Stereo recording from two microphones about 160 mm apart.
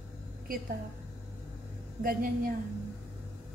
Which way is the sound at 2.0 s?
65° right (ahead or behind).